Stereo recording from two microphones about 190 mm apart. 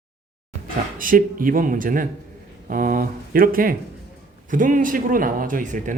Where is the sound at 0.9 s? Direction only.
45° right (ahead or behind).